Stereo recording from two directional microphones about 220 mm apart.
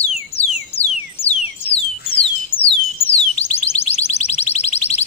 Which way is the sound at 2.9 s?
25° left (ahead or behind).